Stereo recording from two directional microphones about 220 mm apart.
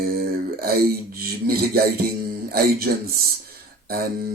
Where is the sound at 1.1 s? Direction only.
45° right (ahead or behind).